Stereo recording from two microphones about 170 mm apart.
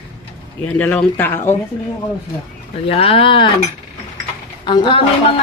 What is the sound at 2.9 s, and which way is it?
Speech, 35° left (ahead or behind).